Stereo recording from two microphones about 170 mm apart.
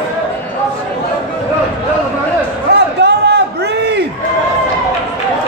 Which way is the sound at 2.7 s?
80° right.